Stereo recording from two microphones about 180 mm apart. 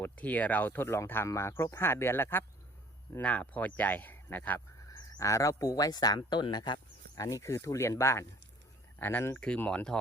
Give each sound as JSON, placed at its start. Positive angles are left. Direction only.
{"t": 0.0, "sound": "speech", "side_deg": 10}